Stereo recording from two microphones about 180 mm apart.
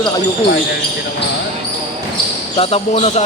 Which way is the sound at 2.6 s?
35° left (ahead or behind).